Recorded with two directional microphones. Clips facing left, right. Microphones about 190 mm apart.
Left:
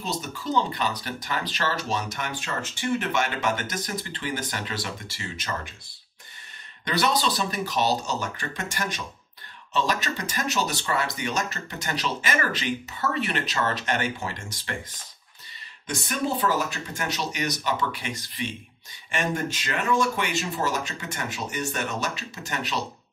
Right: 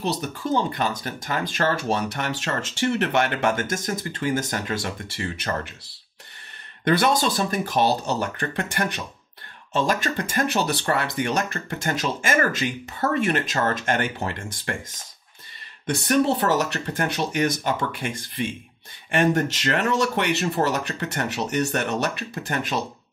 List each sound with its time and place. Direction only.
0.0 s speech: 60° right (ahead or behind)
6.8 s speech: 50° right (ahead or behind)
9.8 s speech: 50° right (ahead or behind)
15.9 s speech: 70° right (ahead or behind); by 18.5 s 50° right (ahead or behind)
19.0 s speech: 65° right (ahead or behind)